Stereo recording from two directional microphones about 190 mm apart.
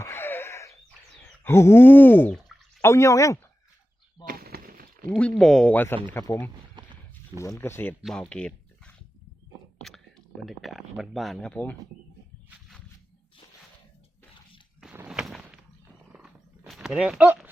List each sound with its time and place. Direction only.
0.0 s a sound: 10° left (ahead or behind)
1.5 s speech: 15° left (ahead or behind)
2.5 s bathtub: 5° right (ahead or behind)
2.8 s speech: 15° left (ahead or behind)
4.3 s a sound: 55° right (ahead or behind)
5.0 s speech: 5° left (ahead or behind)
6.8 s wild animals: 25° right (ahead or behind)
7.3 s speech: 15° left (ahead or behind)
14.8 s a sound: 5° right (ahead or behind)